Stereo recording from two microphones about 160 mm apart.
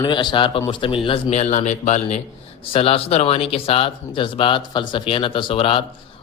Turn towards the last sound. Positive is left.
turn(degrees=35)  # may be behind; listen again after turning